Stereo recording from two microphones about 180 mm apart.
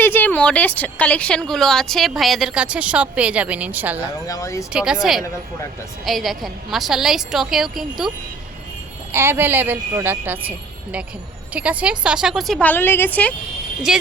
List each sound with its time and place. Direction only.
0.0 s a woman's voice: 10° left (ahead or behind); by 4.0 s 10° right (ahead or behind)
4.3 s speech: 15° left (ahead or behind)
4.7 s a woman's voice: 5° right (ahead or behind)
9.1 s a woman's voice: 15° right (ahead or behind)
11.5 s a woman's voice: 5° right (ahead or behind); by 13.3 s 10° left (ahead or behind)
13.9 s a woman's voice: 5° right (ahead or behind)